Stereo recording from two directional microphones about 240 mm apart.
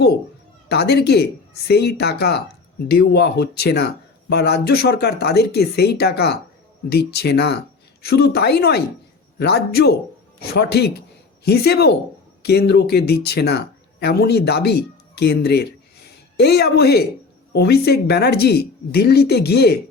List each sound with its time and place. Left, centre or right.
0.7 s speech: left